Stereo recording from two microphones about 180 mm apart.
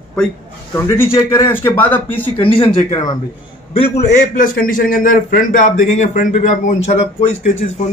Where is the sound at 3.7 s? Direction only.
40° left (ahead or behind).